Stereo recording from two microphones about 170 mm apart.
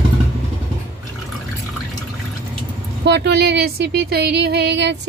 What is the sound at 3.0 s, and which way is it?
Speech, 85° right.